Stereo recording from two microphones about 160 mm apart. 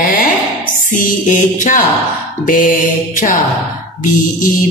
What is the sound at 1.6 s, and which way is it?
Music, 55° left (ahead or behind).